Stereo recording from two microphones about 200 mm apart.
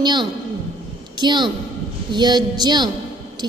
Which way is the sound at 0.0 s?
20° right (ahead or behind).